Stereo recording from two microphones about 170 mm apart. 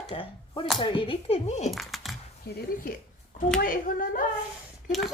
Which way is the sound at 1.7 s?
Centre (ahead or behind).